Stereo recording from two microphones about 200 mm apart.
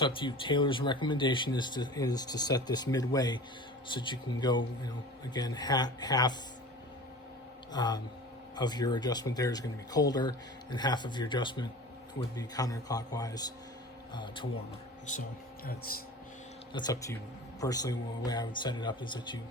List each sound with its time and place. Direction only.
0.0 s speech: 25° left (ahead or behind)
7.7 s speech: 20° left (ahead or behind)
15.9 s speech: 45° left (ahead or behind)
16.7 s speech: 20° left (ahead or behind)